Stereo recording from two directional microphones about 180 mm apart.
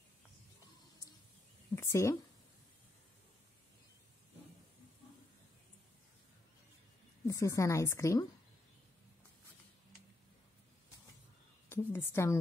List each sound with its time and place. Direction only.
1.8 s a woman's voice: 15° left (ahead or behind)
7.2 s a woman's voice: 15° left (ahead or behind)
11.7 s a woman's voice: 10° left (ahead or behind)